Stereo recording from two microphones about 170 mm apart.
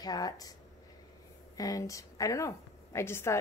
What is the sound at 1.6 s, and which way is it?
A woman's voice, 20° left (ahead or behind).